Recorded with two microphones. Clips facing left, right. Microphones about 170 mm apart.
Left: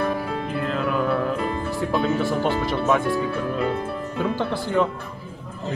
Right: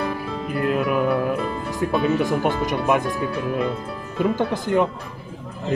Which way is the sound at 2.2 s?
15° right (ahead or behind).